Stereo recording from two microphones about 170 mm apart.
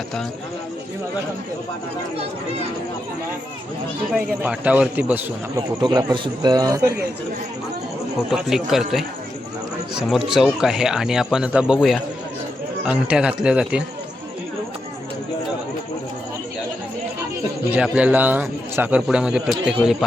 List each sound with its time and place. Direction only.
4.1 s a man's voice: 5° right (ahead or behind)
5.5 s a man's voice: 25° right (ahead or behind)
8.3 s speech: centre (ahead or behind)
10.1 s speech: centre (ahead or behind)
17.7 s a man's voice: 5° right (ahead or behind)